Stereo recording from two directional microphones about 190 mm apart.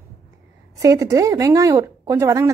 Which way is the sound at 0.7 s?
15° right (ahead or behind).